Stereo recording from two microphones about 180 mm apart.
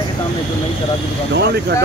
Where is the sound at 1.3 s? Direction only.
70° right (ahead or behind).